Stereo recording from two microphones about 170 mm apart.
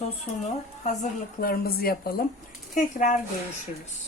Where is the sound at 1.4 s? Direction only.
60° left (ahead or behind).